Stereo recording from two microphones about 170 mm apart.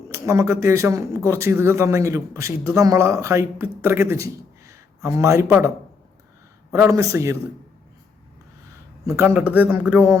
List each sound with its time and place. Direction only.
0.1 s speech: 15° right (ahead or behind)
9.0 s speech: 15° right (ahead or behind)